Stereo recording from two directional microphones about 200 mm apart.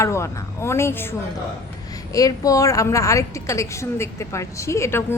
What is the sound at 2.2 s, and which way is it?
A woman's voice, 15° left (ahead or behind).